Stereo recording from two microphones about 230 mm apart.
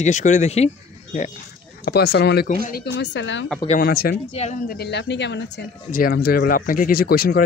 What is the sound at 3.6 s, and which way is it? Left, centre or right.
Speech, left.